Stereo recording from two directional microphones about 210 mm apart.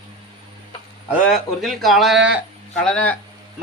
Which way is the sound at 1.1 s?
Centre (ahead or behind).